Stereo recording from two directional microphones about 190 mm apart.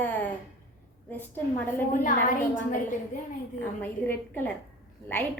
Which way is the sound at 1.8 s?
45° left (ahead or behind).